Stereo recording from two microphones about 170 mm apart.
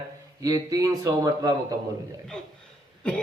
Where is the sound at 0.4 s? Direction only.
20° right (ahead or behind).